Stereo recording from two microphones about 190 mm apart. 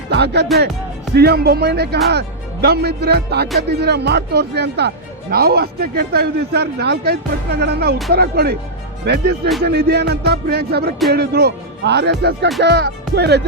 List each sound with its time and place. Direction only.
0.1 s music: 60° right (ahead or behind)
1.1 s a man's voice: 55° right (ahead or behind)